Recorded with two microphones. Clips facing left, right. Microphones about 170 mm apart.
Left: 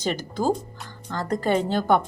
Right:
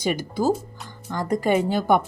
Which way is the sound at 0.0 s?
10° right (ahead or behind).